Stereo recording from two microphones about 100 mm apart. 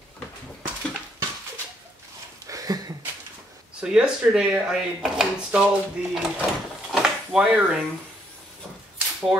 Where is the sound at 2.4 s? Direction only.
35° right (ahead or behind).